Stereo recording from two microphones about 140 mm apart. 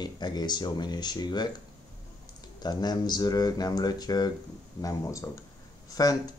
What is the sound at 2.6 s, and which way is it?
Speech, 30° left (ahead or behind).